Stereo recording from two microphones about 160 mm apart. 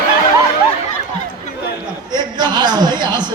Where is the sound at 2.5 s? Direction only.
25° right (ahead or behind).